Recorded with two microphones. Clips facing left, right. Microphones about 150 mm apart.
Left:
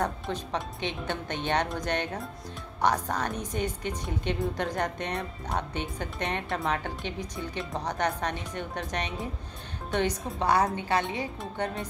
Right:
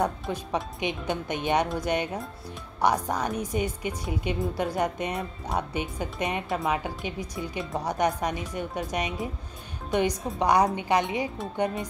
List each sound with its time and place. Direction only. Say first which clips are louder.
0.0 s a woman's voice: right 3 dB; 10° right (ahead or behind)